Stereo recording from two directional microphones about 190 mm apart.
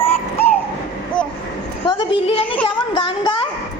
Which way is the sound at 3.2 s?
25° left (ahead or behind).